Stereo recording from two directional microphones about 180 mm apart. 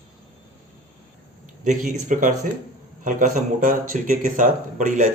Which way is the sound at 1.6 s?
45° right (ahead or behind).